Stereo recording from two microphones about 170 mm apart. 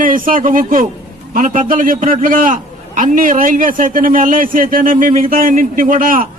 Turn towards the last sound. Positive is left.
turn(degrees=-55)  # may be behind; listen again after turning